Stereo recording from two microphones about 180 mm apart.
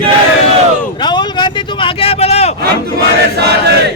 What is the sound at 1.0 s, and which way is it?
A man's voice, 25° left (ahead or behind).